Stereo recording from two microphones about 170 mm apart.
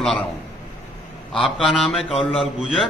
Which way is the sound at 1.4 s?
Centre (ahead or behind).